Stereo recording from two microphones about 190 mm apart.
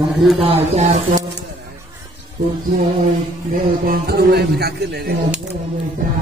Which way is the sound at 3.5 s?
50° right (ahead or behind).